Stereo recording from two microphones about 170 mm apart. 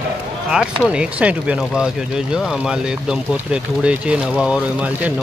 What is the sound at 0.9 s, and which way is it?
Speech, 5° right (ahead or behind).